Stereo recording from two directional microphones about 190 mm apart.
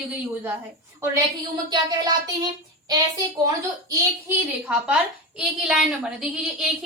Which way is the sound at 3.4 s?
20° right (ahead or behind).